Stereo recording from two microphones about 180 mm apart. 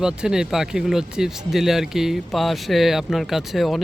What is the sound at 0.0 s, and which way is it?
Speech, 5° right (ahead or behind).